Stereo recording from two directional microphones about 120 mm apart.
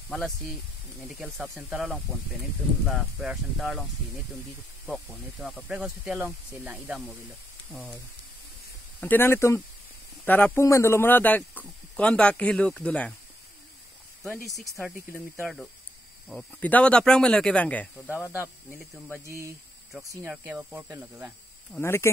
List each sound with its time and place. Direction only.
0.1 s speech: centre (ahead or behind)
2.9 s speech: centre (ahead or behind)
4.8 s speech: 5° left (ahead or behind)
5.7 s speech: 10° right (ahead or behind)
7.7 s speech: 10° left (ahead or behind)
9.0 s speech: 15° left (ahead or behind)
14.8 s speech: centre (ahead or behind); by 18.3 s 15° left (ahead or behind)
20.1 s speech: 20° right (ahead or behind)
21.7 s speech: 20° left (ahead or behind)